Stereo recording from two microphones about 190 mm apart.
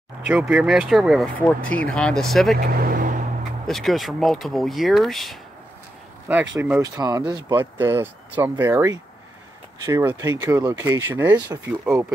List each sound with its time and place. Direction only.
0.3 s speech: 5° right (ahead or behind)
2.5 s vehicle: 50° right (ahead or behind)
3.6 s speech: centre (ahead or behind)